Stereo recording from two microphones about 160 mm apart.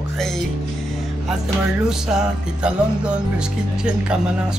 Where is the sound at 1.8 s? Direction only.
5° right (ahead or behind).